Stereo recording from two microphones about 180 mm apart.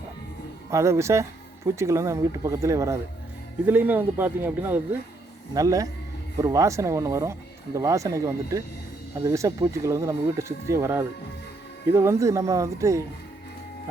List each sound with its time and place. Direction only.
0.7 s speech: 15° right (ahead or behind)